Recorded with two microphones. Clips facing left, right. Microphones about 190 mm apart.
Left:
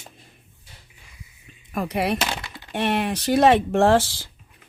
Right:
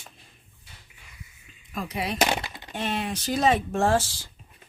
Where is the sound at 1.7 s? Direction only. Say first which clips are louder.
Left 7 dB; 65° left (ahead or behind).